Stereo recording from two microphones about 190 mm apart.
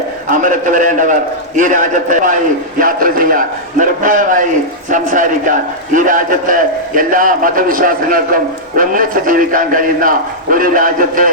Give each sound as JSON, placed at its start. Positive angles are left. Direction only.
{"t": 0.3, "sound": "a man's voice", "side_deg": -45}